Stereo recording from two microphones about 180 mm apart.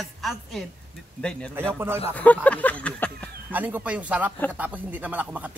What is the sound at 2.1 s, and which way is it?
Speech, 10° left (ahead or behind).